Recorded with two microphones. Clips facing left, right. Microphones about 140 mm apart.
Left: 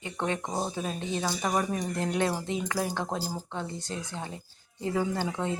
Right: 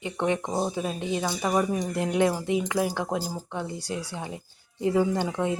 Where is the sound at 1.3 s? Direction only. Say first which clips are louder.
Right 4 dB; 5° right (ahead or behind).